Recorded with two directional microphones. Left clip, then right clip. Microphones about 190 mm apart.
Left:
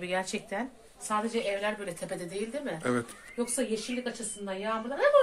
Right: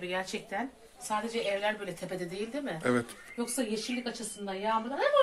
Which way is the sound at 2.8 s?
5° right (ahead or behind).